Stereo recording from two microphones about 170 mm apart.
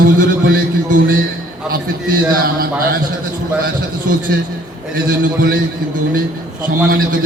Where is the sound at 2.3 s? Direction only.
60° right (ahead or behind).